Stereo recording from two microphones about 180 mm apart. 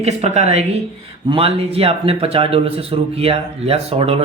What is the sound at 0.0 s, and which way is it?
Speech, 35° right (ahead or behind).